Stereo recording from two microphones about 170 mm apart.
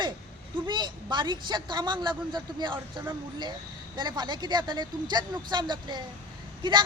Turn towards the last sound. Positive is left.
turn(degrees=-25)  # may be behind; listen again after turning